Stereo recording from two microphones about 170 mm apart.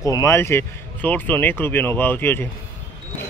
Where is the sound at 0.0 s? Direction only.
20° left (ahead or behind).